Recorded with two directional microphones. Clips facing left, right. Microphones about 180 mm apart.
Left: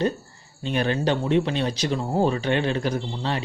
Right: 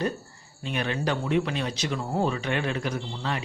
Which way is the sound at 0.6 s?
30° left (ahead or behind).